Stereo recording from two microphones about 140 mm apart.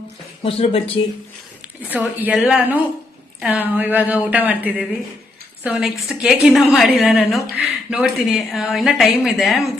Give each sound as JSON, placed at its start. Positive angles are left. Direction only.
{"t": 0.4, "sound": "speech", "side_deg": 45}
{"t": 1.9, "sound": "a woman's voice", "side_deg": -10}